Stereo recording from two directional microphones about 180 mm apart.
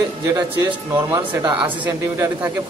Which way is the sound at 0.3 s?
15° right (ahead or behind).